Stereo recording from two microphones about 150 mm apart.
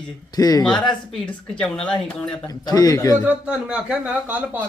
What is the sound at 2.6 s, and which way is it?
Speech, 25° left (ahead or behind).